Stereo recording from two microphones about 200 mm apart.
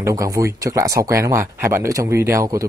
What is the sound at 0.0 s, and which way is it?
Speech, 15° right (ahead or behind).